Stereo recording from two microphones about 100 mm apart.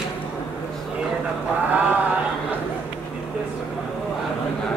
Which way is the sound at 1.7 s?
15° right (ahead or behind).